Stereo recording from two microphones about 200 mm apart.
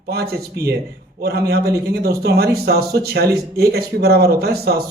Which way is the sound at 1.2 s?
50° right (ahead or behind).